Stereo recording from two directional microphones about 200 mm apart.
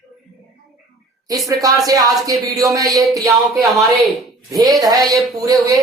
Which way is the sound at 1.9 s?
20° right (ahead or behind).